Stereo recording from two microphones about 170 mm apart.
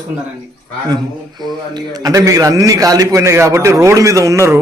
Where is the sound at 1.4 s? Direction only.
25° right (ahead or behind).